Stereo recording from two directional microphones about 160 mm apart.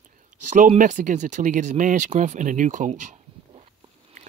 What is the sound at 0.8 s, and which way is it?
Speech, 55° right (ahead or behind).